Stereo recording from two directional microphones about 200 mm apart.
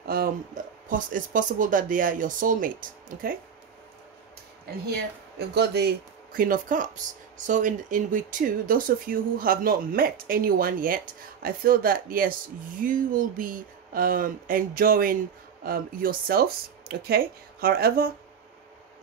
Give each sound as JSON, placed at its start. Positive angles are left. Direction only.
{"t": 0.0, "sound": "a sound", "side_deg": -50}
{"t": 0.8, "sound": "speech", "side_deg": -40}
{"t": 5.5, "sound": "speech", "side_deg": -55}
{"t": 6.3, "sound": "speech", "side_deg": -45}